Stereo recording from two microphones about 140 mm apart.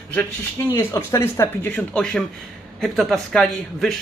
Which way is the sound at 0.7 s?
20° left (ahead or behind).